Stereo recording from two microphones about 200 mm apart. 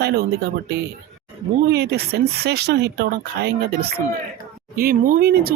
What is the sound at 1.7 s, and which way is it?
Speech, 55° right (ahead or behind).